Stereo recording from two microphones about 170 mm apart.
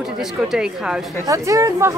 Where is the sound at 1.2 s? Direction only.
20° right (ahead or behind).